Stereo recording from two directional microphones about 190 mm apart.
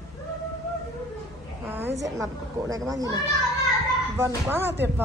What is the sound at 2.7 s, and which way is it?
Speech, 20° right (ahead or behind).